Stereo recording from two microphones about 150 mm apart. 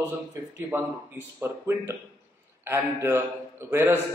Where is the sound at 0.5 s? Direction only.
15° right (ahead or behind).